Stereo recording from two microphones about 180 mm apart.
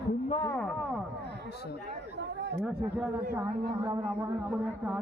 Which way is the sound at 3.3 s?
20° right (ahead or behind).